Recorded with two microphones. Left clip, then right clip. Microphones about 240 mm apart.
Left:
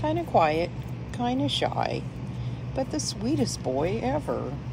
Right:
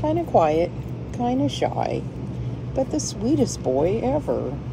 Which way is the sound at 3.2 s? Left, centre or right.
Centre.